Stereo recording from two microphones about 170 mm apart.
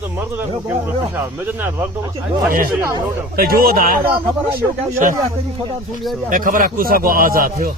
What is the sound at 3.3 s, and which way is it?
Speech, 60° right (ahead or behind).